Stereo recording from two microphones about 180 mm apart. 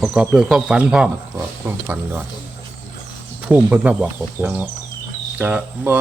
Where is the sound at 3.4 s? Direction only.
5° right (ahead or behind).